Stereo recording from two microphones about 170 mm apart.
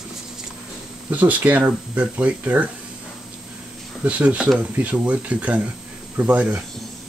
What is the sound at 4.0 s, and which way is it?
Speech, 10° right (ahead or behind).